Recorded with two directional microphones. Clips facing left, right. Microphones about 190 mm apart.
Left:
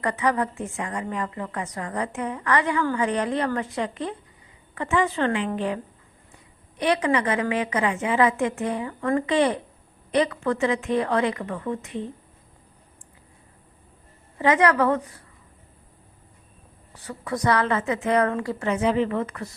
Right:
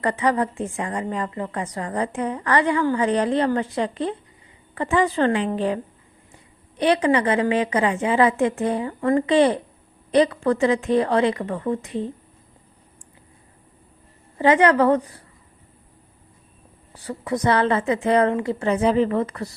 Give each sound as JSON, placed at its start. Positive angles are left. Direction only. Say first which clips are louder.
{"t": 0.0, "sound": "a woman's voice", "louder": "right 3 dB", "side_deg": -30}
{"t": 14.3, "sound": "a woman's voice", "louder": "right 3 dB", "side_deg": -30}
{"t": 16.9, "sound": "a woman's voice", "louder": "right 5 dB", "side_deg": -35}
{"t": 17.2, "sound": "a woman's voice", "louder": "right 3 dB", "side_deg": -20}